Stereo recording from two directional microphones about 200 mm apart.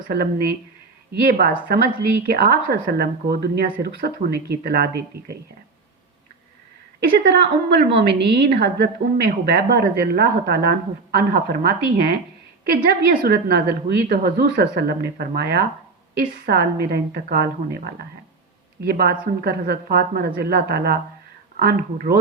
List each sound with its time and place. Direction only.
0.1 s a woman's voice: 50° right (ahead or behind)
7.0 s a woman's voice: 60° right (ahead or behind)